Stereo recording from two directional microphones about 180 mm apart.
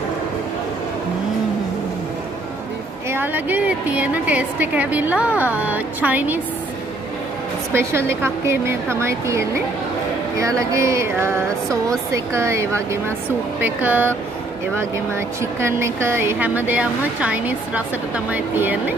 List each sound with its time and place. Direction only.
3.1 s speech: 10° right (ahead or behind)
7.7 s speech: 15° right (ahead or behind)